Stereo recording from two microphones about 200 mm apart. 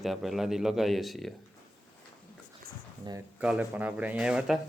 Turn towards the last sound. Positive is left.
turn(degrees=-5)  # may be behind; listen again after turning